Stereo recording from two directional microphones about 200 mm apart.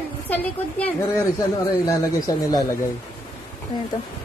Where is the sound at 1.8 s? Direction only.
20° left (ahead or behind).